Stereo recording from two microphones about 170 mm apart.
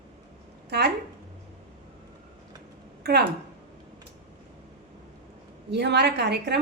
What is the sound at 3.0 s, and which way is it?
Speech, 70° right (ahead or behind).